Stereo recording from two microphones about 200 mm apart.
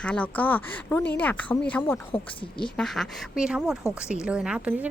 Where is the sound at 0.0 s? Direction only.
5° left (ahead or behind).